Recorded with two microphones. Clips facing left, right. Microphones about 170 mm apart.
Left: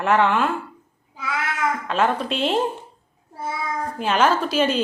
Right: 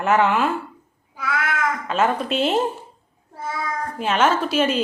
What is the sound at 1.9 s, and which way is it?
Speech, centre (ahead or behind).